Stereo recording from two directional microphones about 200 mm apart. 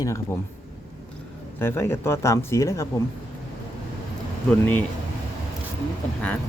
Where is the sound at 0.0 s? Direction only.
15° left (ahead or behind).